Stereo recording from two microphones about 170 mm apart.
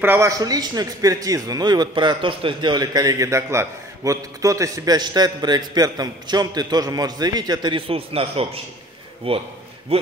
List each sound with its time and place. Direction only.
0.0 s a man's voice: 15° right (ahead or behind); by 9.4 s 35° right (ahead or behind)